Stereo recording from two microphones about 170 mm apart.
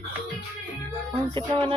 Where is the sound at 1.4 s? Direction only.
30° right (ahead or behind).